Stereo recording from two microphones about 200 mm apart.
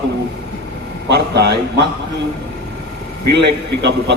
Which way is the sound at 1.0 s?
55° right (ahead or behind).